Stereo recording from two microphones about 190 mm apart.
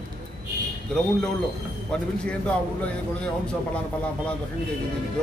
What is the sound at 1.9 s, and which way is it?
A man's voice, 5° left (ahead or behind).